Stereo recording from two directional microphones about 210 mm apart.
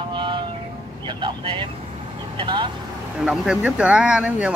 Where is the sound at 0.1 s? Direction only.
25° right (ahead or behind).